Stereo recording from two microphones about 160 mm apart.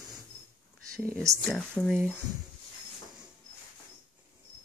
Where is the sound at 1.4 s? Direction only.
5° left (ahead or behind).